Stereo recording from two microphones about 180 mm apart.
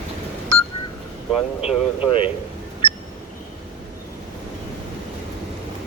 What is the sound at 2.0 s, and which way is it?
Speech, 30° left (ahead or behind).